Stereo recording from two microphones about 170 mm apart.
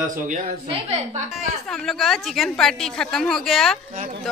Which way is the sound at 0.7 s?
35° right (ahead or behind).